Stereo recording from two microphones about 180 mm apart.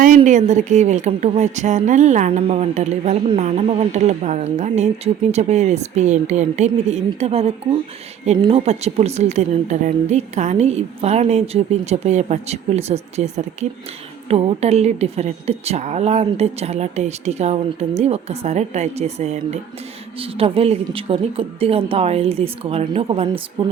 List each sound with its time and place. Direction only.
0.2 s a woman's voice: 40° right (ahead or behind)